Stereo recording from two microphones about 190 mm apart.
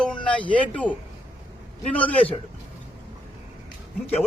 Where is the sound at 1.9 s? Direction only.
10° left (ahead or behind).